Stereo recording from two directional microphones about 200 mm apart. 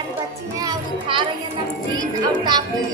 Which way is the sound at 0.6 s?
20° right (ahead or behind).